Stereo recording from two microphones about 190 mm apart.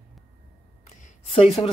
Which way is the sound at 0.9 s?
35° left (ahead or behind).